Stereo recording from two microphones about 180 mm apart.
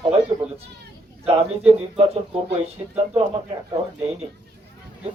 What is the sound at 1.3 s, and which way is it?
Speech, 35° right (ahead or behind).